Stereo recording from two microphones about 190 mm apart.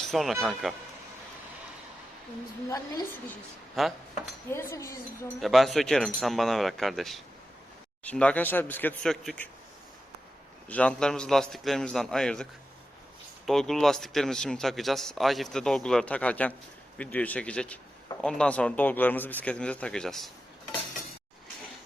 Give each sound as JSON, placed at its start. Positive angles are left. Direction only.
{"t": 0.1, "sound": "a man's voice", "side_deg": 0}
{"t": 2.6, "sound": "speech", "side_deg": 15}
{"t": 3.8, "sound": "a man's voice", "side_deg": 0}
{"t": 4.5, "sound": "speech", "side_deg": 15}
{"t": 5.4, "sound": "a man's voice", "side_deg": 0}
{"t": 10.7, "sound": "a man's voice", "side_deg": 5}